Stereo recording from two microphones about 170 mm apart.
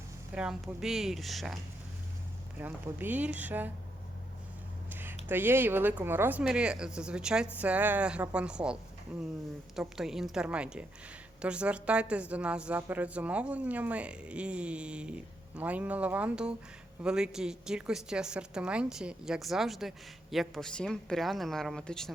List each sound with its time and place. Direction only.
0.3 s a woman's voice: 5° right (ahead or behind)
2.6 s a woman's voice: 10° right (ahead or behind)
4.9 s a sound: 10° right (ahead or behind)
5.3 s a woman's voice: 10° right (ahead or behind)
9.7 s a woman's voice: centre (ahead or behind)